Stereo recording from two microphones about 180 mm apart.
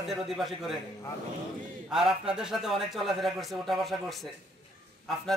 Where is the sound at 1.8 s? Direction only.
5° right (ahead or behind).